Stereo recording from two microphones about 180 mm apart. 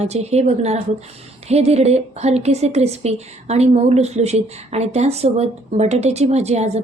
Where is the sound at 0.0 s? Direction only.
35° right (ahead or behind).